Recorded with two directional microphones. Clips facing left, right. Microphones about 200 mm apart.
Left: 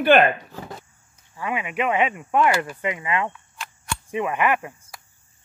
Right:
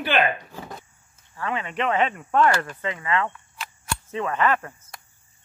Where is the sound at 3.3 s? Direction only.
Centre (ahead or behind).